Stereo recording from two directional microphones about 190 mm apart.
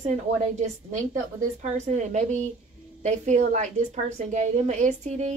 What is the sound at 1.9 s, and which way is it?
Speech, 40° right (ahead or behind).